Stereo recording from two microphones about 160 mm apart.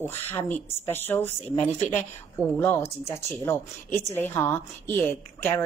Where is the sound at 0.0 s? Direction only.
10° left (ahead or behind).